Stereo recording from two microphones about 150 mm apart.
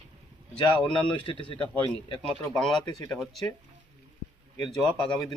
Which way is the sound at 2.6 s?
5° left (ahead or behind).